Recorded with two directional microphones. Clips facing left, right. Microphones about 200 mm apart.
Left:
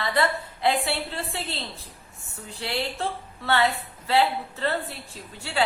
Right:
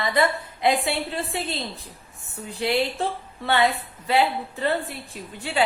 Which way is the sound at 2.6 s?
15° right (ahead or behind).